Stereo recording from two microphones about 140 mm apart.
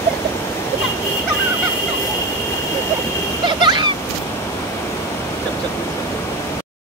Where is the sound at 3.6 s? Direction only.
35° right (ahead or behind).